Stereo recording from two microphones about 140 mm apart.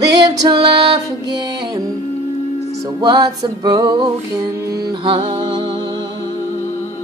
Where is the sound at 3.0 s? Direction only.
30° right (ahead or behind).